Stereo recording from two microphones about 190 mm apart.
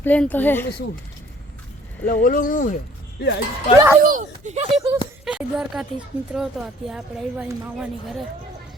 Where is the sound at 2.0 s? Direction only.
50° left (ahead or behind).